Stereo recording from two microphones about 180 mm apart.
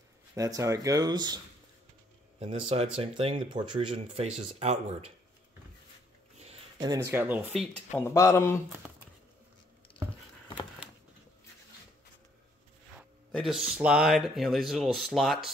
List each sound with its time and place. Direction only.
0.4 s speech: 20° right (ahead or behind)
3.0 s speech: 30° right (ahead or behind)
6.3 s a sound: 35° right (ahead or behind)
6.8 s speech: 20° right (ahead or behind)
7.2 s speech: 10° right (ahead or behind)
8.0 s speech: 15° left (ahead or behind)
13.3 s speech: centre (ahead or behind)